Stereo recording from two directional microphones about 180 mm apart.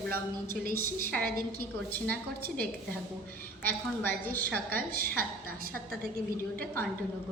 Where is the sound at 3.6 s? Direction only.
10° left (ahead or behind).